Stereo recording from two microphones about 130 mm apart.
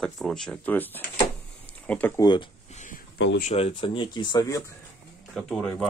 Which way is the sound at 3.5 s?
45° left (ahead or behind).